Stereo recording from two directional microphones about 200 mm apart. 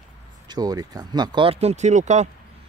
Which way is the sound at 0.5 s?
20° right (ahead or behind).